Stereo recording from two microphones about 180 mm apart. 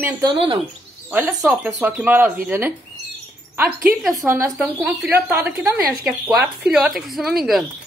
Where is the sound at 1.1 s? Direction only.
15° right (ahead or behind).